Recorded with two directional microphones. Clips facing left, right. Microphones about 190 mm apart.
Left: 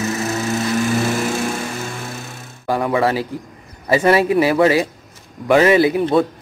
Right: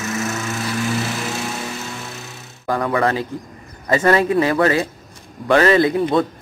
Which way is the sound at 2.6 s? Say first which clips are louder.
Left 1 dB; 15° left (ahead or behind).